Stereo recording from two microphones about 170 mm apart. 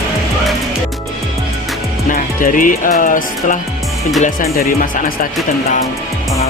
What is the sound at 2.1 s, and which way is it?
Music, 50° left (ahead or behind).